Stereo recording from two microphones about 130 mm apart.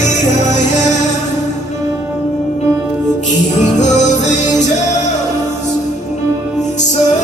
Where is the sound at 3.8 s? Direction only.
65° left (ahead or behind).